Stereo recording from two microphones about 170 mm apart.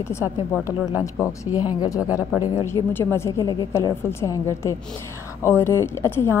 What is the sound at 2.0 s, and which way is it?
Speech, 10° right (ahead or behind).